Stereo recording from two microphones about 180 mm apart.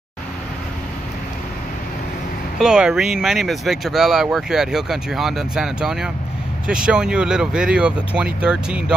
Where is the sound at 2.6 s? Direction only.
5° right (ahead or behind).